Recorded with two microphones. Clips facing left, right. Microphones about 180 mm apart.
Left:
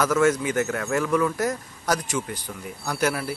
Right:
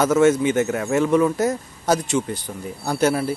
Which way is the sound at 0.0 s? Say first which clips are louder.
Right 5 dB; 25° right (ahead or behind).